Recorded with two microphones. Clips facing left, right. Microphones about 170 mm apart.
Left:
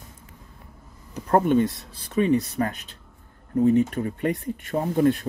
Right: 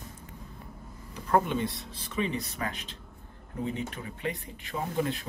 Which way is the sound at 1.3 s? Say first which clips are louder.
Left 7 dB; 50° left (ahead or behind).